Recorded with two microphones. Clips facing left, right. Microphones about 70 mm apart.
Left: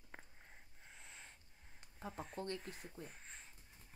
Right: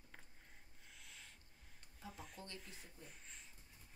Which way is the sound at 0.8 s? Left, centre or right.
Left.